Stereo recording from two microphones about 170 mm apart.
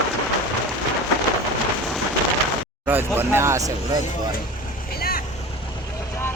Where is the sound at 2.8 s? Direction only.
10° right (ahead or behind).